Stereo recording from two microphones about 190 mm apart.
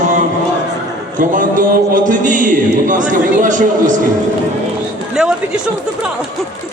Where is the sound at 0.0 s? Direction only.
40° right (ahead or behind).